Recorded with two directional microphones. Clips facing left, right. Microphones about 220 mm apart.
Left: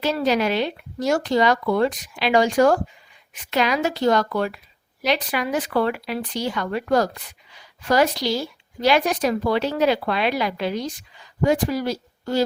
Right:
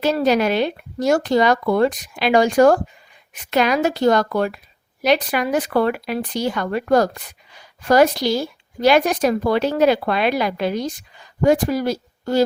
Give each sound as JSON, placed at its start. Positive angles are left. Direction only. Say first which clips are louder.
{"t": 0.0, "sound": "speech", "louder": "right 4 dB", "side_deg": -50}